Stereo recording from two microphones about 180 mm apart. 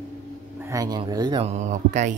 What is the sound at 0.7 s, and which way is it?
Speech, 20° right (ahead or behind).